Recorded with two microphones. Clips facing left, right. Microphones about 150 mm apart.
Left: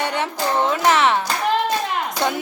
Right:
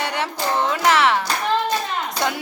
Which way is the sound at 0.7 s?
20° left (ahead or behind).